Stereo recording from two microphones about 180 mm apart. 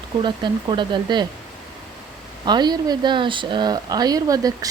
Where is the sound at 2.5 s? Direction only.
25° right (ahead or behind).